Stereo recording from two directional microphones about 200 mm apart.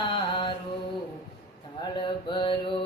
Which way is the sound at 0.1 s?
25° left (ahead or behind).